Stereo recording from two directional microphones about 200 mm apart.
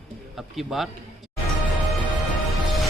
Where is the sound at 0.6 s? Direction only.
Centre (ahead or behind).